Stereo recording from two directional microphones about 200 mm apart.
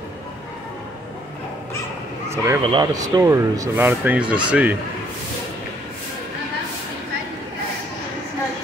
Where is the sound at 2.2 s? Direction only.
15° right (ahead or behind).